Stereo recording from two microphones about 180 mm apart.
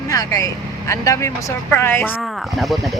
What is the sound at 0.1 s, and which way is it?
Speech, 20° left (ahead or behind).